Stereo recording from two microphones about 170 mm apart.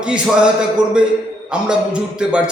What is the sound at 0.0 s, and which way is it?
A man's voice, 5° right (ahead or behind).